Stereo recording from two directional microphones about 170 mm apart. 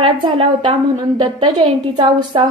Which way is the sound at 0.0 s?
35° right (ahead or behind).